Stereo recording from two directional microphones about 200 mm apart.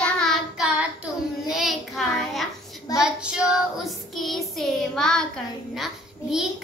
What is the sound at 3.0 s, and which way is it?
A child's voice, 5° right (ahead or behind).